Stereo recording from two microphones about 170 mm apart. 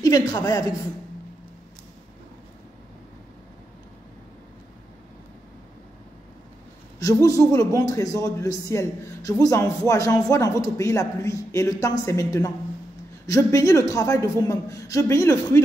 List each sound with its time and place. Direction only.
0.0 s a man's voice: 20° left (ahead or behind)
7.0 s a man's voice: 20° left (ahead or behind)